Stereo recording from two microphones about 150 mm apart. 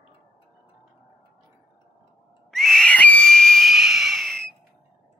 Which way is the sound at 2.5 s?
Centre (ahead or behind).